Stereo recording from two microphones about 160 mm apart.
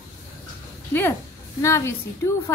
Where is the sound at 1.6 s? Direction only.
20° left (ahead or behind).